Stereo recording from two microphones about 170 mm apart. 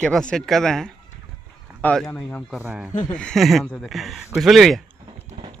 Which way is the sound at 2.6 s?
10° right (ahead or behind).